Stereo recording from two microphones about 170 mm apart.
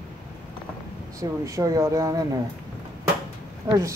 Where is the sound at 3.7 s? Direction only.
20° right (ahead or behind).